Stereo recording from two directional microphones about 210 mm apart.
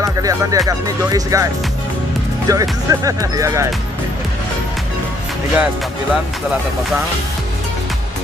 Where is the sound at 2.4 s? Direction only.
15° right (ahead or behind).